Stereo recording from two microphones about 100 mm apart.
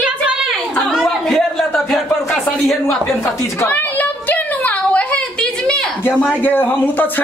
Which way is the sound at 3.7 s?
15° left (ahead or behind).